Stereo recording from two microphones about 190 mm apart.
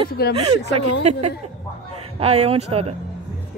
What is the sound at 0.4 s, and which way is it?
Speech, 30° right (ahead or behind).